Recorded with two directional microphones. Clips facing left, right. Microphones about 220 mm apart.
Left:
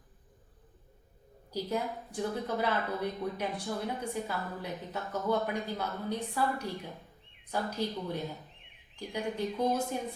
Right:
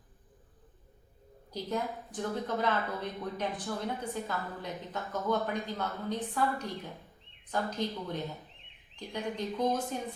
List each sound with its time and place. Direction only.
1.5 s a woman's voice: 10° left (ahead or behind)